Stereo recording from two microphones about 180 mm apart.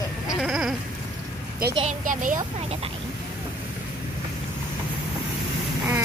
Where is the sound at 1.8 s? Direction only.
45° right (ahead or behind).